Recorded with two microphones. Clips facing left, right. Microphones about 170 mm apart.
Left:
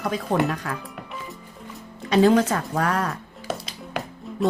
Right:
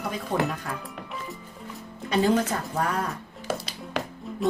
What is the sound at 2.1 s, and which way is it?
Speech, 85° left.